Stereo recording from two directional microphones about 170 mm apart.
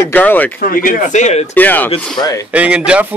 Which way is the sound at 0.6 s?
55° left (ahead or behind).